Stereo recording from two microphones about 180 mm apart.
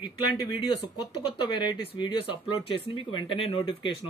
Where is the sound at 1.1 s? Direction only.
25° left (ahead or behind).